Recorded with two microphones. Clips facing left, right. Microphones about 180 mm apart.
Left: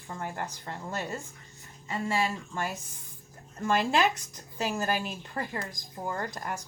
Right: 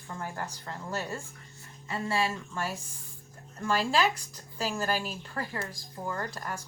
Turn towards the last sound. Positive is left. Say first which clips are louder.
# left 1 dB
turn(degrees=15)  # may be behind; listen again after turning